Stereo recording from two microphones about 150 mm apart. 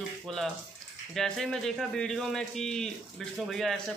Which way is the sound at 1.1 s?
5° left (ahead or behind).